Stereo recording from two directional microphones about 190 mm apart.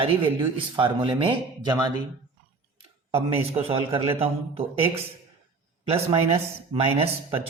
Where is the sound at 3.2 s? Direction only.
30° right (ahead or behind).